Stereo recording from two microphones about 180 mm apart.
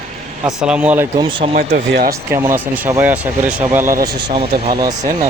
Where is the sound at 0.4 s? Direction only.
5° right (ahead or behind).